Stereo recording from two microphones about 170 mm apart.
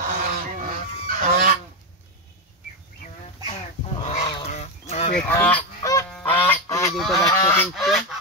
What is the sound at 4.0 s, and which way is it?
Goose, 40° left (ahead or behind).